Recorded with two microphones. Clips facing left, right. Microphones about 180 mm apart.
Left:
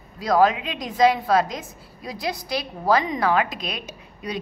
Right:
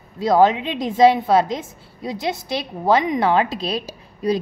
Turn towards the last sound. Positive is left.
turn(degrees=-30)  # may be behind; listen again after turning